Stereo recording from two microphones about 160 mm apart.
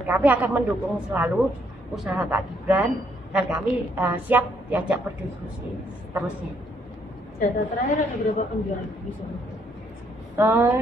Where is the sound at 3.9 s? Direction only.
10° right (ahead or behind).